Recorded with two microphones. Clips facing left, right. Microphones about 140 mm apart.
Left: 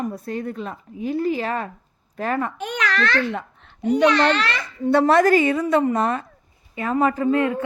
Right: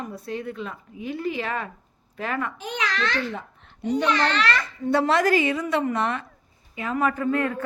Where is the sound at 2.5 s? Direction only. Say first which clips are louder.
Left 4 dB; 60° left (ahead or behind).